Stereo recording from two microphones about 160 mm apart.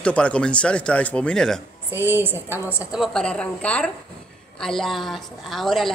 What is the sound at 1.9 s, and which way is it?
Speech, 15° right (ahead or behind).